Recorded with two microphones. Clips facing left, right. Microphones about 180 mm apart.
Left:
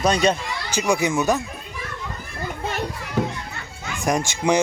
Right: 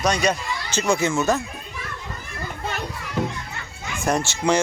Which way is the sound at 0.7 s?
15° left (ahead or behind).